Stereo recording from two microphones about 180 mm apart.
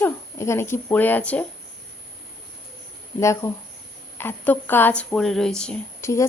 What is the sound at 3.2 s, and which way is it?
Speech, 15° left (ahead or behind).